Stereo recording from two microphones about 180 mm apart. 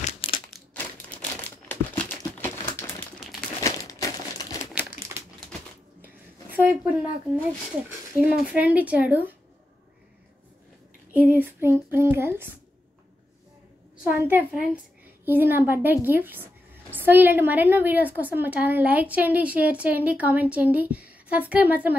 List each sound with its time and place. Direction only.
0.0 s crumpling: 30° left (ahead or behind)
0.7 s crumpling: 10° left (ahead or behind)
3.2 s crumpling: centre (ahead or behind)
3.6 s crumpling: 20° left (ahead or behind)
6.0 s a sound: 10° right (ahead or behind)
8.5 s a woman's voice: 10° right (ahead or behind)
11.1 s a woman's voice: 10° right (ahead or behind)
14.2 s a woman's voice: 10° right (ahead or behind)